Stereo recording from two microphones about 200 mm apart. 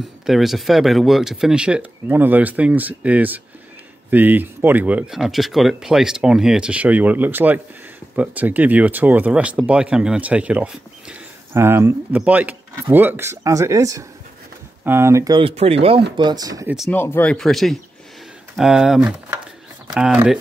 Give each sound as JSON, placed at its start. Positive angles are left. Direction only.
{"t": 0.3, "sound": "speech", "side_deg": 0}
{"t": 16.9, "sound": "speech", "side_deg": 10}